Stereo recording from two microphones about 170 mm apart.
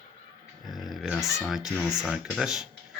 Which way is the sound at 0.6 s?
Centre (ahead or behind).